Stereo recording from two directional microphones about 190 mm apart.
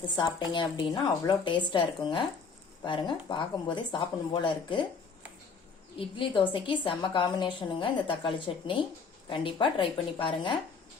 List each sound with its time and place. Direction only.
0.2 s a woman's voice: 25° left (ahead or behind)
6.0 s a woman's voice: 25° left (ahead or behind)